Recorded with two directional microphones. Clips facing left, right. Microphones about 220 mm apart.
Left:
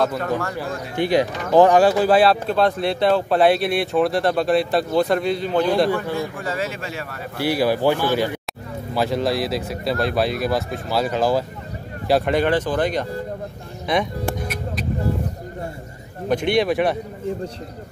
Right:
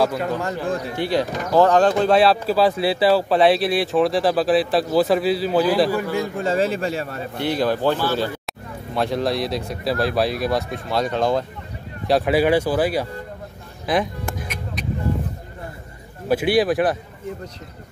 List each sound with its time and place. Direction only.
0.0 s speech: 10° right (ahead or behind)
0.9 s speech: 15° left (ahead or behind); by 6.0 s 5° right (ahead or behind)
6.1 s speech: 25° right (ahead or behind)
7.3 s speech: 10° left (ahead or behind)
8.9 s speech: centre (ahead or behind)
16.3 s speech: 5° right (ahead or behind)